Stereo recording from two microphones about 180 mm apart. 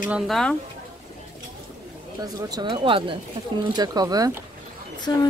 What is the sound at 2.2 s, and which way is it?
Speech, 25° right (ahead or behind).